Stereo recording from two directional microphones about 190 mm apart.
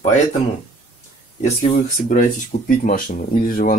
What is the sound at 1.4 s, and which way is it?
Speech, 40° left (ahead or behind).